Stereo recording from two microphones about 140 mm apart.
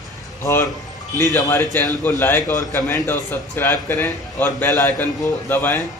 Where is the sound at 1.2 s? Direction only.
20° left (ahead or behind).